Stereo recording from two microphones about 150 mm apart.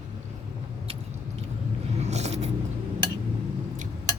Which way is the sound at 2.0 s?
45° right (ahead or behind).